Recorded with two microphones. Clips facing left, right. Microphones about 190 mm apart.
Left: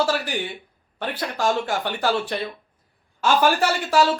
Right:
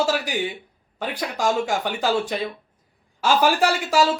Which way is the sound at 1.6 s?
15° right (ahead or behind).